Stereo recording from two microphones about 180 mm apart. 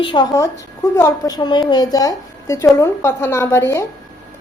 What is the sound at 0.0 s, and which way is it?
A woman's voice, 25° left (ahead or behind).